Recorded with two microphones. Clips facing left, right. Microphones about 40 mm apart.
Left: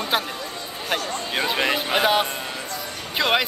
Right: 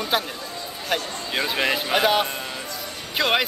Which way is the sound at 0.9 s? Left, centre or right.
Centre.